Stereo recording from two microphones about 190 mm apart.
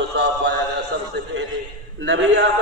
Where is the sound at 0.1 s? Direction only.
60° right (ahead or behind).